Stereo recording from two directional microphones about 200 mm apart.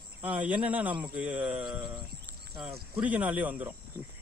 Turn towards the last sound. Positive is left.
turn(degrees=-10)  # may be behind; listen again after turning